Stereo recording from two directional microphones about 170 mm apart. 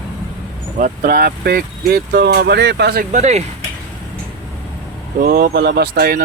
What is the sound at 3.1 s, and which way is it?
Speech, 40° right (ahead or behind).